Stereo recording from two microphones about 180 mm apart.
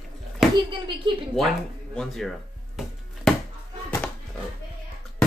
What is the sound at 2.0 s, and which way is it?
Speech, centre (ahead or behind).